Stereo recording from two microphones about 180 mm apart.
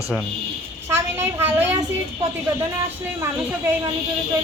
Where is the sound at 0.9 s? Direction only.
15° right (ahead or behind).